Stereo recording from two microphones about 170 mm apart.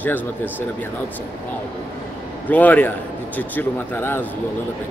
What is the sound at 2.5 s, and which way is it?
A man's voice, 10° left (ahead or behind).